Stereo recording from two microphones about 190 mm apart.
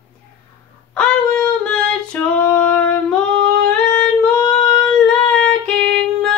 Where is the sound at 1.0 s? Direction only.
5° left (ahead or behind).